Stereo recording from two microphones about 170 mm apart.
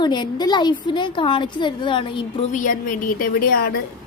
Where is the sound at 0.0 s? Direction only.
25° left (ahead or behind).